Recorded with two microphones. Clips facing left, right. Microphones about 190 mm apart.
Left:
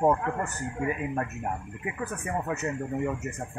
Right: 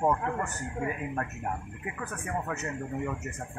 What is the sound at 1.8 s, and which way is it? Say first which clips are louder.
Speech: left 4 dB; 15° left (ahead or behind).